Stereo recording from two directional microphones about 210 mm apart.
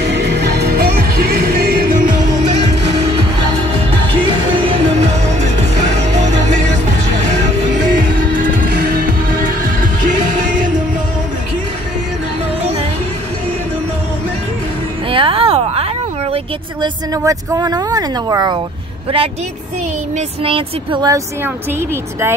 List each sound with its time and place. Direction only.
0.0 s music: 55° right (ahead or behind)
4.2 s music: 25° right (ahead or behind)
8.4 s music: 40° right (ahead or behind)
15.0 s a sound: 25° right (ahead or behind)
16.8 s speech: 15° right (ahead or behind)